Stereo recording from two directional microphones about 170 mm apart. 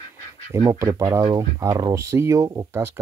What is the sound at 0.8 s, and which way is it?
Speech, 15° right (ahead or behind).